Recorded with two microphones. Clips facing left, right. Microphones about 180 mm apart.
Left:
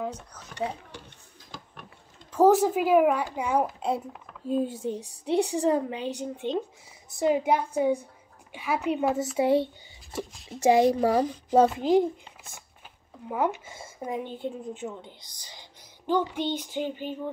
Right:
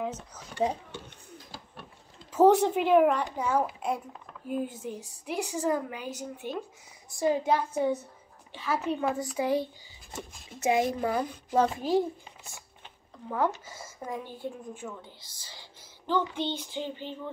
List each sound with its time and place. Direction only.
0.0 s speech: 5° right (ahead or behind)
0.6 s speech: 25° right (ahead or behind)
2.3 s a child's voice: centre (ahead or behind)
4.5 s a woman's voice: 30° left (ahead or behind)
10.6 s a child's voice: 30° left (ahead or behind)
13.3 s a woman's voice: 15° left (ahead or behind)